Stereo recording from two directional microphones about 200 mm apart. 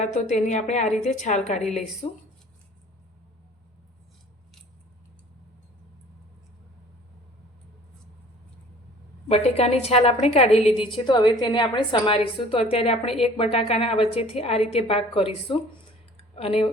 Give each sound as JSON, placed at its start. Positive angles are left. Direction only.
{"t": 0.0, "sound": "a woman's voice", "side_deg": 35}
{"t": 9.3, "sound": "a woman's voice", "side_deg": 30}
{"t": 16.1, "sound": "a sound", "side_deg": 30}